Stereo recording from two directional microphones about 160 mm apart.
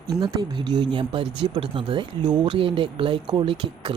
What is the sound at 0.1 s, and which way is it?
Speech, 25° right (ahead or behind).